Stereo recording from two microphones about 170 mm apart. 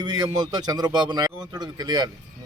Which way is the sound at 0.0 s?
25° right (ahead or behind).